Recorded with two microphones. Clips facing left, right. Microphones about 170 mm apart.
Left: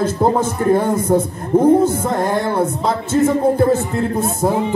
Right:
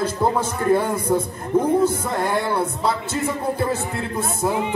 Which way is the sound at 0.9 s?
25° left (ahead or behind).